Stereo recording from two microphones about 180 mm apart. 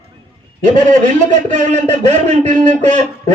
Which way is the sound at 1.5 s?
40° right (ahead or behind).